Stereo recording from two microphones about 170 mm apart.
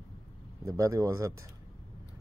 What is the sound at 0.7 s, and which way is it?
Speech, 20° right (ahead or behind).